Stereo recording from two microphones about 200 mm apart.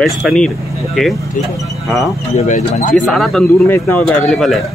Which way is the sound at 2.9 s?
Centre (ahead or behind).